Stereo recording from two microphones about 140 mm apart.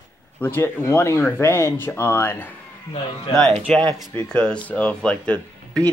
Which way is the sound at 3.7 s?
5° left (ahead or behind).